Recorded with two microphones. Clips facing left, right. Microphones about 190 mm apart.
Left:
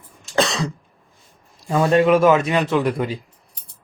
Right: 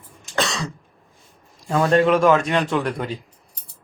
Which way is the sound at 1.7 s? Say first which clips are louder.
Left 2 dB; 10° left (ahead or behind).